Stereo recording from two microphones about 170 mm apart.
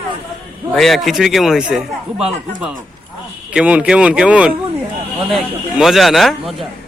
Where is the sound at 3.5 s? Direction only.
5° right (ahead or behind).